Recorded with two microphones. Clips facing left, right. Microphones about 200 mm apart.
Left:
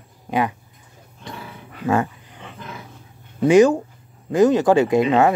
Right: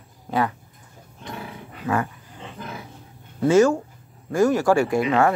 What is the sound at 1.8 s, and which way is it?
Speech, 25° left (ahead or behind).